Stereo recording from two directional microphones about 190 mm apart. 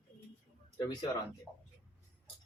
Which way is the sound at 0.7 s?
25° left (ahead or behind).